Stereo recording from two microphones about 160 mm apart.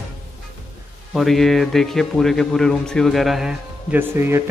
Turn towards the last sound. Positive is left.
turn(degrees=-15)  # may be behind; listen again after turning